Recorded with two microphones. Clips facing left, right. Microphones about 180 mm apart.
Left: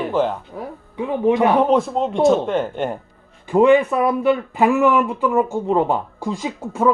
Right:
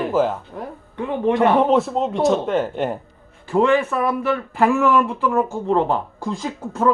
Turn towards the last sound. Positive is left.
turn(degrees=10)  # may be behind; listen again after turning